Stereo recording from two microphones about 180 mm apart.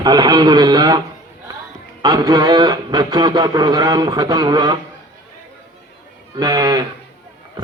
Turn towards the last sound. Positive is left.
turn(degrees=-20)  # may be behind; listen again after turning